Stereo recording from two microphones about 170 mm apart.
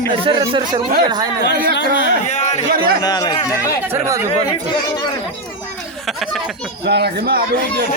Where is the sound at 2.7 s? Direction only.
60° right (ahead or behind).